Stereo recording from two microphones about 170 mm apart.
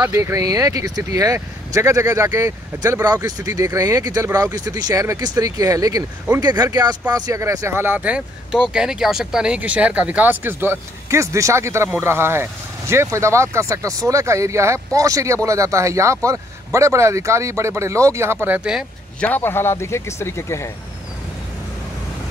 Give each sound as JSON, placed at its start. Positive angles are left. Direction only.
{"t": 0.0, "sound": "speech", "side_deg": -15}
{"t": 19.1, "sound": "a man's voice", "side_deg": 10}